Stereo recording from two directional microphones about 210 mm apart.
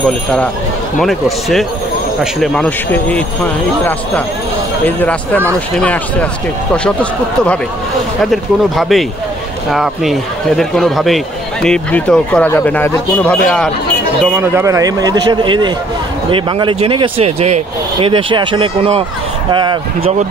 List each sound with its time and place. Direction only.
0.9 s a man's voice: centre (ahead or behind)
4.8 s speech: 10° left (ahead or behind)
6.7 s a man's voice: 5° left (ahead or behind)
14.2 s a man's voice: 10° right (ahead or behind)